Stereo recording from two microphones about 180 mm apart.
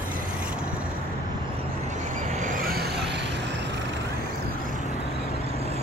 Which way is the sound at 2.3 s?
45° right (ahead or behind).